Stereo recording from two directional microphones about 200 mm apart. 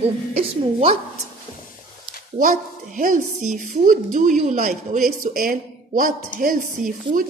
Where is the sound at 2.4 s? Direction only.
45° right (ahead or behind).